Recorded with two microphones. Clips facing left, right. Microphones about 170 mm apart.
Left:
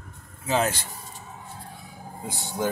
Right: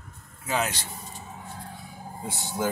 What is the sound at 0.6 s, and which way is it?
Speech, 50° left (ahead or behind).